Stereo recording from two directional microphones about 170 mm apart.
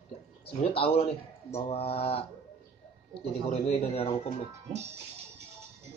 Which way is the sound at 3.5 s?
35° left (ahead or behind).